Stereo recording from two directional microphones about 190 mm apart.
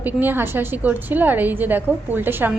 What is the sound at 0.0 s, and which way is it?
A woman's voice, 10° right (ahead or behind).